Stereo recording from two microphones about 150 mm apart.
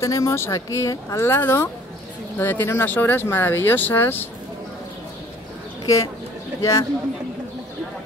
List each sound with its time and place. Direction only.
0.0 s speech: 20° left (ahead or behind)
6.6 s speech: 20° left (ahead or behind)